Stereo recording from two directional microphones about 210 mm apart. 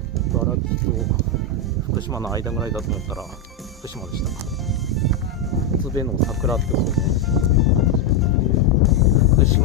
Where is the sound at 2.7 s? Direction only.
Centre (ahead or behind).